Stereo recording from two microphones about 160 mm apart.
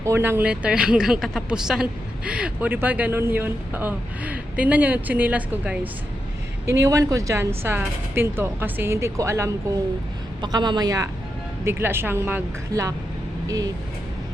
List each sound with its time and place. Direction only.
0.0 s speech: 15° right (ahead or behind)
6.7 s speech: 20° right (ahead or behind)
10.4 s a woman's voice: 30° right (ahead or behind)